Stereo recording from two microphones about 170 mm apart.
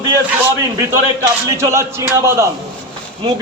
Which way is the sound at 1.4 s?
20° right (ahead or behind).